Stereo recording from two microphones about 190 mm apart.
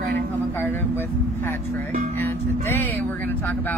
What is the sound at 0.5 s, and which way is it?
Speech, 10° left (ahead or behind).